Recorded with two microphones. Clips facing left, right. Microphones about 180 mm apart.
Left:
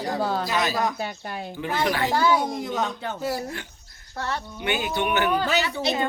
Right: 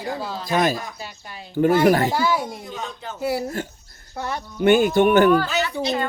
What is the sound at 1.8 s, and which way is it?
Speech, 45° right (ahead or behind).